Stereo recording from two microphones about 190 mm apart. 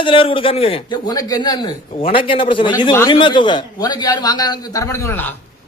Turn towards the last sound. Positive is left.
turn(degrees=10)  # may be behind; listen again after turning